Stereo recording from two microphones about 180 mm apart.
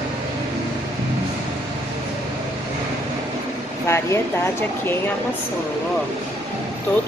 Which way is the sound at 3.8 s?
15° left (ahead or behind).